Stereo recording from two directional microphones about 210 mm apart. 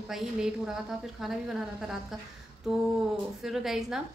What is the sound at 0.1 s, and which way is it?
A woman's voice, centre (ahead or behind).